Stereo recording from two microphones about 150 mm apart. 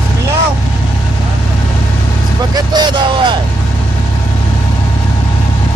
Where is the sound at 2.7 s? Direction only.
30° right (ahead or behind).